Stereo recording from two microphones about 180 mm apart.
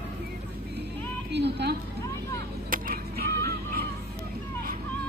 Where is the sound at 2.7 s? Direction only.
55° right (ahead or behind).